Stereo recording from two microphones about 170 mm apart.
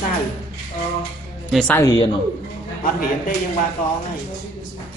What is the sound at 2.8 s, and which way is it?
Speech, 55° left (ahead or behind).